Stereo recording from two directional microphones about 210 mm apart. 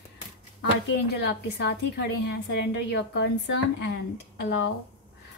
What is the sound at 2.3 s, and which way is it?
A woman's voice, 55° left (ahead or behind).